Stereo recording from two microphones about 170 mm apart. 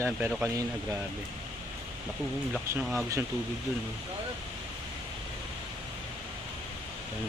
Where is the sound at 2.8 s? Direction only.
Centre (ahead or behind).